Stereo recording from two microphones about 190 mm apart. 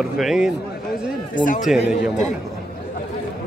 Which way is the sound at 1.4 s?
45° left (ahead or behind).